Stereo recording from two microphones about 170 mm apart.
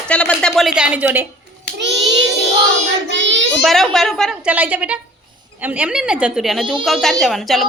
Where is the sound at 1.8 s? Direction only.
90° right.